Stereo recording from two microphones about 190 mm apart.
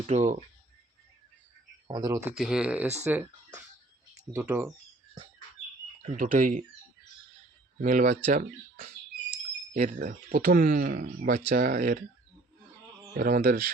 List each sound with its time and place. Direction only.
0.1 s speech: 40° right (ahead or behind)
1.9 s speech: 20° right (ahead or behind)
2.3 s speech: centre (ahead or behind)
6.0 s speech: 45° right (ahead or behind)
7.8 s speech: 45° right (ahead or behind)
13.1 s speech: 50° right (ahead or behind)